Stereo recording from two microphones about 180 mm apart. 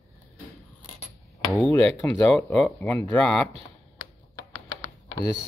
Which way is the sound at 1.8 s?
5° left (ahead or behind).